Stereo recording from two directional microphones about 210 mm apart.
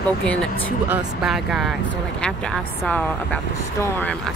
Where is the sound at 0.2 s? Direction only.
5° left (ahead or behind).